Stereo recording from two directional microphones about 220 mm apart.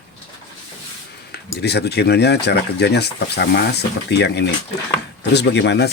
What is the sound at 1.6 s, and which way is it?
Speech, 50° left (ahead or behind).